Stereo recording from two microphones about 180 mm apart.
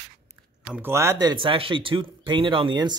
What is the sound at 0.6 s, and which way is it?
Speech, 10° right (ahead or behind).